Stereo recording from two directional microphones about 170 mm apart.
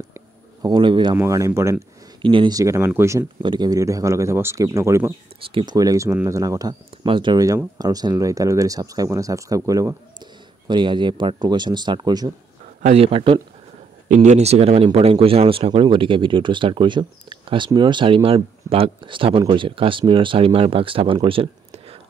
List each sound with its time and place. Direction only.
0.1 s a sound: 25° right (ahead or behind)
1.1 s speech: 15° right (ahead or behind)
2.2 s speech: 30° right (ahead or behind)
5.4 s speech: 30° right (ahead or behind)
12.8 s a man's voice: 35° right (ahead or behind)
14.0 s a man's voice: 45° right (ahead or behind)